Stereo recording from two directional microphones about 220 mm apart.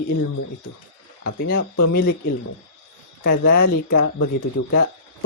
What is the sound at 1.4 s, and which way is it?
Speech, 45° left (ahead or behind).